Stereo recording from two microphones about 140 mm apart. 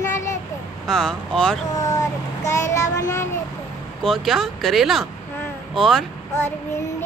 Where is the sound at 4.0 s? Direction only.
Centre (ahead or behind).